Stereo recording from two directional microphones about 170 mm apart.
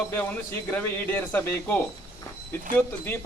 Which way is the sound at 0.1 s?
10° left (ahead or behind).